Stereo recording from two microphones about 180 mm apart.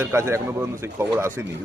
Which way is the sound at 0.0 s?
15° right (ahead or behind).